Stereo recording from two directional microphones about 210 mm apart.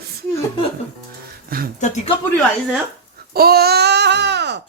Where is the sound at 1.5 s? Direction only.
45° right (ahead or behind).